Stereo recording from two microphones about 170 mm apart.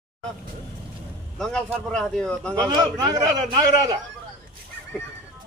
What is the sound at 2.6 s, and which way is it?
A man's voice, 25° right (ahead or behind).